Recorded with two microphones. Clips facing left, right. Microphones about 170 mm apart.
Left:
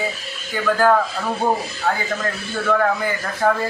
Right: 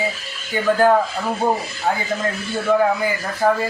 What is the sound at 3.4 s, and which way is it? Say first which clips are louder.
Speech: right 1 dB; 5° right (ahead or behind).